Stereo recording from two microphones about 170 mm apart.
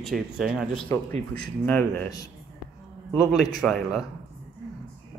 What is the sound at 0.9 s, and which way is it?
Speech, 20° left (ahead or behind).